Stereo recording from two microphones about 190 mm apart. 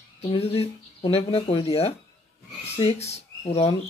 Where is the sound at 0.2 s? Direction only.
30° left (ahead or behind).